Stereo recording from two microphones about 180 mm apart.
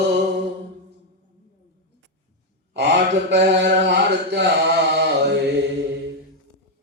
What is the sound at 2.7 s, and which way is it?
Mantra, 75° right (ahead or behind).